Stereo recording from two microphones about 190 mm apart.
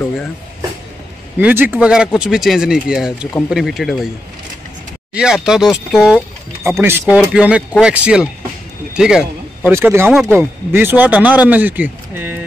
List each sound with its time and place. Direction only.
1.4 s speech: 10° right (ahead or behind)
5.1 s speech: 5° right (ahead or behind)
6.7 s speech: 10° right (ahead or behind)